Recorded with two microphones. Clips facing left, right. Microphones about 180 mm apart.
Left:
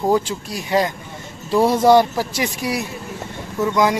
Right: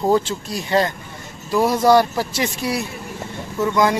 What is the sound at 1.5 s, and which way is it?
Speech, 25° left (ahead or behind).